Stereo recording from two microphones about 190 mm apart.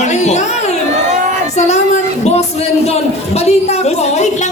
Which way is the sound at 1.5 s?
35° left (ahead or behind).